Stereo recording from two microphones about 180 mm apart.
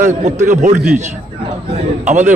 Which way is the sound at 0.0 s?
40° right (ahead or behind).